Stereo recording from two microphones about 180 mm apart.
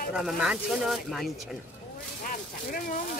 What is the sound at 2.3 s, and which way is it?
Speech, 50° left (ahead or behind).